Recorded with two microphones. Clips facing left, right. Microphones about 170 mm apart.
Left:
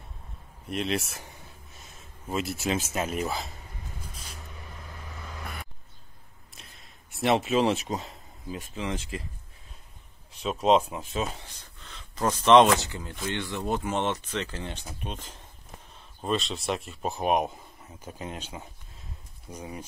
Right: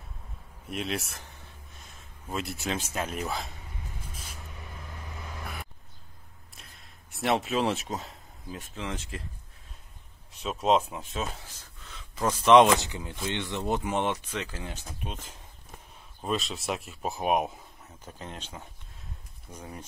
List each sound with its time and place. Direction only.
0.7 s speech: centre (ahead or behind)
6.5 s speech: centre (ahead or behind)
10.4 s speech: centre (ahead or behind)
12.7 s speech: 20° right (ahead or behind); by 19.8 s 10° left (ahead or behind)